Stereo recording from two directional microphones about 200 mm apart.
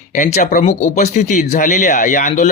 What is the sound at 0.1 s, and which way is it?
A man's voice, 35° left (ahead or behind).